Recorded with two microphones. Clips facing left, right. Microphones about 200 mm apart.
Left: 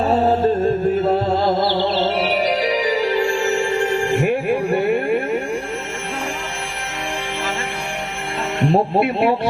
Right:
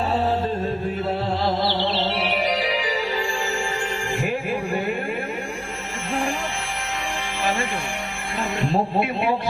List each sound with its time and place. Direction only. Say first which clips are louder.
1.0 s music: left 6 dB; 40° left (ahead or behind)
3.0 s music: left 7 dB; 70° left (ahead or behind)
8.7 s speech: left 6 dB; 60° left (ahead or behind)